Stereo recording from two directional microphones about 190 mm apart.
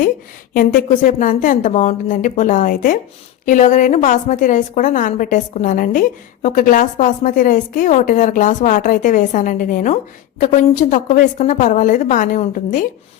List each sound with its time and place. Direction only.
0.5 s a woman's voice: 45° left (ahead or behind)